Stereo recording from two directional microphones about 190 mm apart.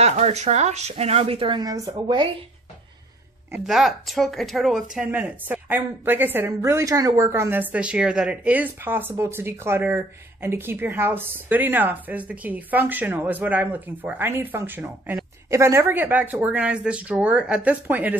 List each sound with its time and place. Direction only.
0.0 s speech: 35° right (ahead or behind)
3.6 s a woman's voice: centre (ahead or behind)